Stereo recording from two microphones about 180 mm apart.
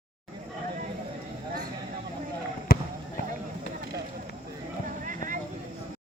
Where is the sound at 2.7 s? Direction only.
55° left (ahead or behind).